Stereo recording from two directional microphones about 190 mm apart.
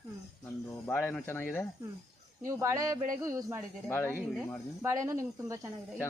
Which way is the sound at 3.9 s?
10° left (ahead or behind).